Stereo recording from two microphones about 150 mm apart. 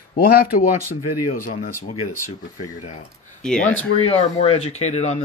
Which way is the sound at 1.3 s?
65° left (ahead or behind).